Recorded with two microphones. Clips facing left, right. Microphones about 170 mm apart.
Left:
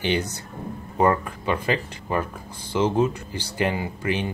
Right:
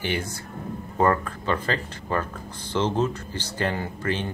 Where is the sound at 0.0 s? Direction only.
20° left (ahead or behind).